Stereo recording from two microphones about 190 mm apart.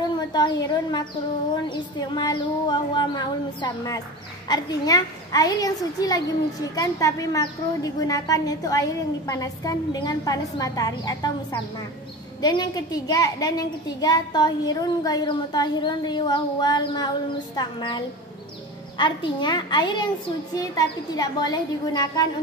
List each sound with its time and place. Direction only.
0.3 s a woman's voice: 20° left (ahead or behind)